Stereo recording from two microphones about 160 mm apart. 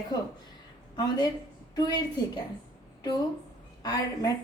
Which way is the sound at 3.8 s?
25° left (ahead or behind).